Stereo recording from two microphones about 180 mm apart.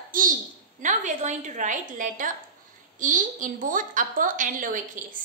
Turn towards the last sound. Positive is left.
turn(degrees=-45)  # may be behind; listen again after turning